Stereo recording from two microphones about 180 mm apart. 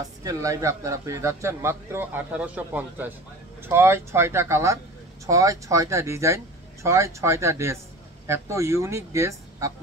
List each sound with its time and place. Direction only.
0.2 s a man's voice: 20° right (ahead or behind)